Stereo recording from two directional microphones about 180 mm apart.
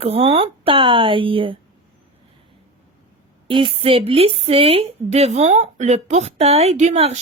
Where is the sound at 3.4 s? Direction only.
30° right (ahead or behind).